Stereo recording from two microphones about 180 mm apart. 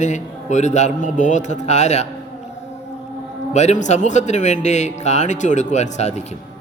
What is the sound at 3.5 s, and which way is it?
A man's voice, 40° left (ahead or behind).